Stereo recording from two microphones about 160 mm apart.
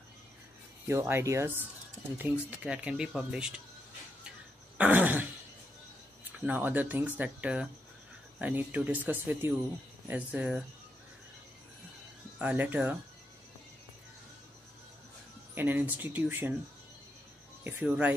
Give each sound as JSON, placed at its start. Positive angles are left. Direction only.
{"t": 0.8, "sound": "speech", "side_deg": -15}
{"t": 4.7, "sound": "throat clearing", "side_deg": -10}
{"t": 6.4, "sound": "speech", "side_deg": -10}
{"t": 12.4, "sound": "speech", "side_deg": -10}
{"t": 15.5, "sound": "speech", "side_deg": -10}
{"t": 17.6, "sound": "speech", "side_deg": -10}